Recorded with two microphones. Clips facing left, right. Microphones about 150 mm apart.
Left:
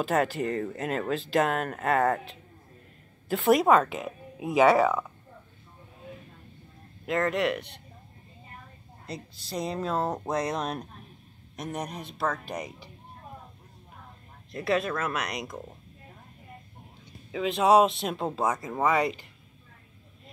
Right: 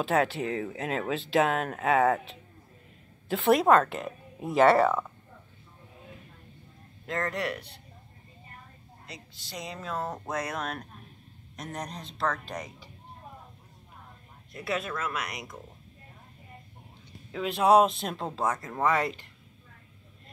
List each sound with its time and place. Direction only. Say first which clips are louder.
0.0 s speech: even; centre (ahead or behind)
7.1 s speech: left 5 dB; 20° left (ahead or behind)
9.0 s speech: left 8 dB; 35° left (ahead or behind); by 12.7 s 10° left (ahead or behind)
14.9 s speech: left 3 dB; 25° left (ahead or behind)
17.3 s speech: left 1 dB; centre (ahead or behind)